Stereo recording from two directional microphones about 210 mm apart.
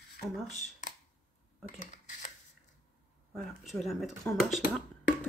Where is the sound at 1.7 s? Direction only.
35° left (ahead or behind).